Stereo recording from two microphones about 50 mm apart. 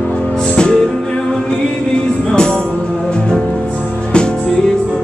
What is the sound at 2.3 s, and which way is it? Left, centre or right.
Music, centre.